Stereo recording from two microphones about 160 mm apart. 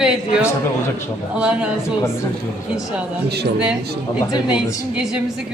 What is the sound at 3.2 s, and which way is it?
Speech, 90° right.